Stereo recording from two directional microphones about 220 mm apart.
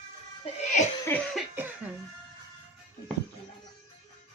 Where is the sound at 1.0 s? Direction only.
5° left (ahead or behind).